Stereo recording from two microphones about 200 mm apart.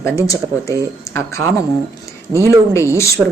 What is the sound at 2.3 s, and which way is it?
Speech, 15° right (ahead or behind).